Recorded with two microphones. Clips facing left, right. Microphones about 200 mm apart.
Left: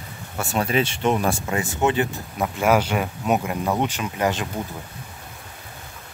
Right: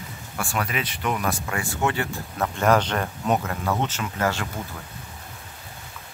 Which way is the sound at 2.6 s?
10° left (ahead or behind).